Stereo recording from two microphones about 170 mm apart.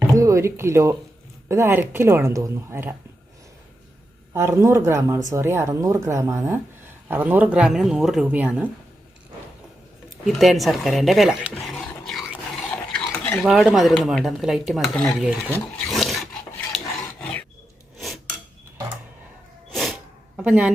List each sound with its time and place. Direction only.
0.2 s speech: 15° right (ahead or behind)
4.4 s speech: 15° right (ahead or behind)
10.2 s speech: centre (ahead or behind)
11.6 s dog: centre (ahead or behind)
12.7 s stir: 5° left (ahead or behind)
13.4 s speech: centre (ahead or behind)
15.9 s dog: centre (ahead or behind)
16.7 s filing: 5° left (ahead or behind)
19.7 s sneeze: centre (ahead or behind)